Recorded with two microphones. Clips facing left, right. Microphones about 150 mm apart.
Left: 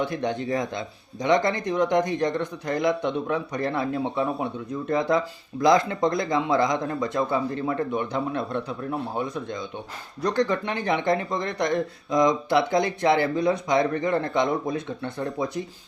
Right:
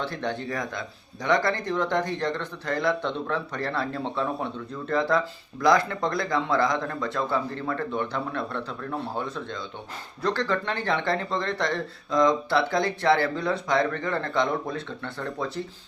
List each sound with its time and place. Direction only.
0.0 s speech: 15° left (ahead or behind)